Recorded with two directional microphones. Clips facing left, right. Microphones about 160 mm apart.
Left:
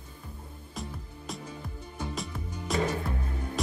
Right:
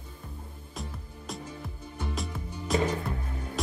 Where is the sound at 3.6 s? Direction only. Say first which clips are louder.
Left 1 dB; centre (ahead or behind).